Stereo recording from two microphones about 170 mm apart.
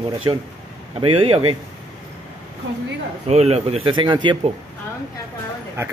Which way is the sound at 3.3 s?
40° right (ahead or behind).